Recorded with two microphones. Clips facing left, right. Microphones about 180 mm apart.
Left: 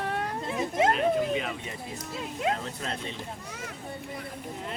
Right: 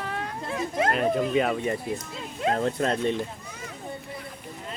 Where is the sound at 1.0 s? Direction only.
50° right (ahead or behind).